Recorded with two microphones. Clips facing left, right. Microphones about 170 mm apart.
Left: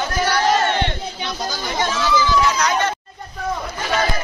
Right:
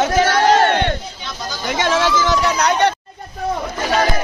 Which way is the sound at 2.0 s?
90° right.